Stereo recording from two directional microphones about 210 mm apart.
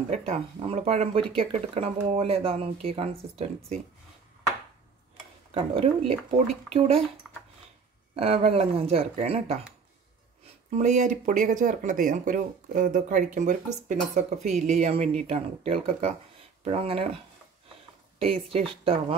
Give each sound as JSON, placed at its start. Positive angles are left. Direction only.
{"t": 0.1, "sound": "speech", "side_deg": -30}
{"t": 5.5, "sound": "speech", "side_deg": -25}
{"t": 7.2, "sound": "dog", "side_deg": -5}
{"t": 8.2, "sound": "speech", "side_deg": -30}
{"t": 10.7, "sound": "speech", "side_deg": -35}
{"t": 18.2, "sound": "speech", "side_deg": -30}